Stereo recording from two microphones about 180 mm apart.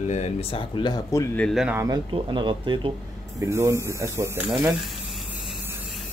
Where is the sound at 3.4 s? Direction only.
15° right (ahead or behind).